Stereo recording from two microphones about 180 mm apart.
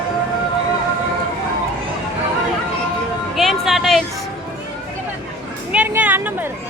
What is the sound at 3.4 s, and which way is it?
Music, centre (ahead or behind).